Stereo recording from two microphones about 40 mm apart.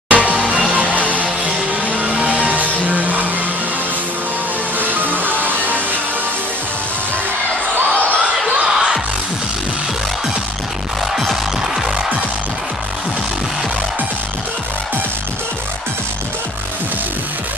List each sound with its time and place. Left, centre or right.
0.1 s music: right
4.7 s music: right
8.5 s music: centre
11.1 s music: centre